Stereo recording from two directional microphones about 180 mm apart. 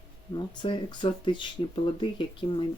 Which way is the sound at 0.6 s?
25° left (ahead or behind).